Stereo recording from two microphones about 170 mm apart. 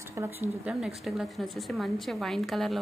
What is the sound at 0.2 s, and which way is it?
Speech, 15° right (ahead or behind).